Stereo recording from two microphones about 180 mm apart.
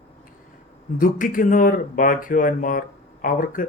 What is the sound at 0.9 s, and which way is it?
Speech, 50° left (ahead or behind).